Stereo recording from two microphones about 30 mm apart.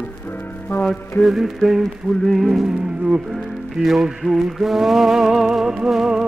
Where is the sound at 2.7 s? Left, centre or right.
Right.